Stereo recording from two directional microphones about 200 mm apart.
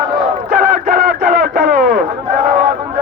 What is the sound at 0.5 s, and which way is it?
Music, 40° right (ahead or behind).